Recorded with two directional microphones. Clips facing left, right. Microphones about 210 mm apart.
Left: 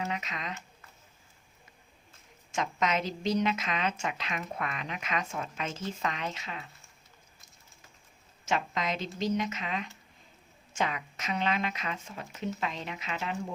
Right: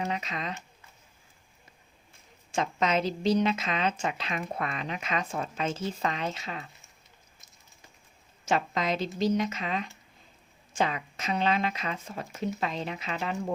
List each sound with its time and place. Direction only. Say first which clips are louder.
0.0 s a woman's voice: right 3 dB; 35° right (ahead or behind)
2.5 s a woman's voice: right 3 dB; 30° right (ahead or behind)
8.4 s a woman's voice: right 3 dB; 35° right (ahead or behind)